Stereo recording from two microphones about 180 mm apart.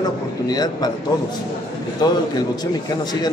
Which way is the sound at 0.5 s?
20° left (ahead or behind).